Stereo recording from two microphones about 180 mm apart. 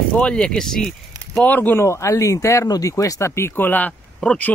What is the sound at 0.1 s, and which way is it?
Speech, 5° left (ahead or behind).